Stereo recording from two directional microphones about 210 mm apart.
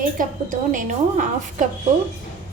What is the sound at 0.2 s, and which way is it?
A woman's voice, 40° right (ahead or behind).